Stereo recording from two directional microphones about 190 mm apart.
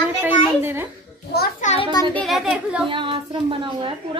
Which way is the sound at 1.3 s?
55° left (ahead or behind).